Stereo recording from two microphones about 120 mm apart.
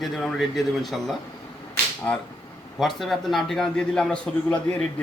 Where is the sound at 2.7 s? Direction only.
Centre (ahead or behind).